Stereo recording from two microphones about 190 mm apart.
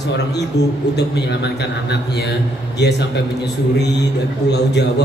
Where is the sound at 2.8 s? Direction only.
60° left (ahead or behind).